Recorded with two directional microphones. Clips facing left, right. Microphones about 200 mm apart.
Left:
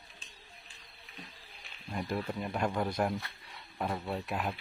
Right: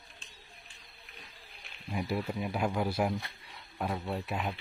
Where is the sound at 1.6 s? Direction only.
5° right (ahead or behind).